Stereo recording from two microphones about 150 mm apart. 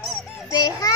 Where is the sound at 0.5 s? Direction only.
25° left (ahead or behind).